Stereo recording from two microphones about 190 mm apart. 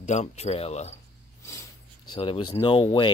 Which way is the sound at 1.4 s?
15° left (ahead or behind).